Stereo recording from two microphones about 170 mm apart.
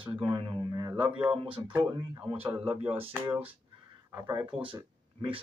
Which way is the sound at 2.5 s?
35° right (ahead or behind).